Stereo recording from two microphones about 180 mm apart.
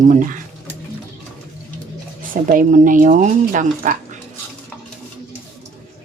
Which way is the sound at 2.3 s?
45° right (ahead or behind).